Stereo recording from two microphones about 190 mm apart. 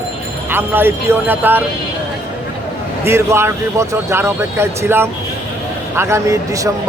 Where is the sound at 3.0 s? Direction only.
15° right (ahead or behind).